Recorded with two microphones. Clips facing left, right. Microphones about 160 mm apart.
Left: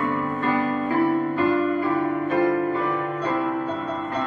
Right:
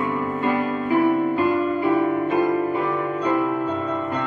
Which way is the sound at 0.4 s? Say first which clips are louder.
Even; 15° right (ahead or behind).